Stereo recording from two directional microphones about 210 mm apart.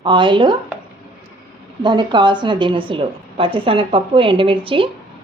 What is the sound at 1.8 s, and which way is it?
A woman's voice, 20° right (ahead or behind).